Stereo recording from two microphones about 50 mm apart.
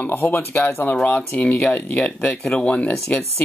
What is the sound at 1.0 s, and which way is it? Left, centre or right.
Speech, left.